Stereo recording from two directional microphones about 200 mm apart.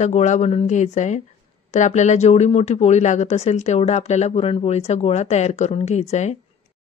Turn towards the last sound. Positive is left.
turn(degrees=35)  # may be behind; listen again after turning